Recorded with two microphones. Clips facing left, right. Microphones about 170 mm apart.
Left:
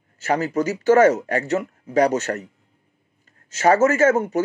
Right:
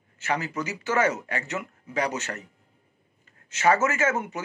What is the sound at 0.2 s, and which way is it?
A man's voice, 40° left (ahead or behind).